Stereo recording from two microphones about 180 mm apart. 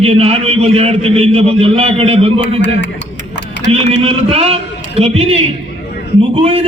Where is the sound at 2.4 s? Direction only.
75° left (ahead or behind).